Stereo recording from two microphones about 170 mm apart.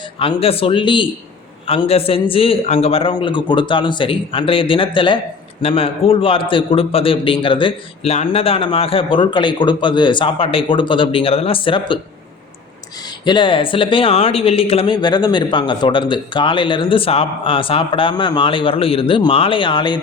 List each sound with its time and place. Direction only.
0.2 s a man's voice: 35° left (ahead or behind)
13.2 s speech: 30° left (ahead or behind)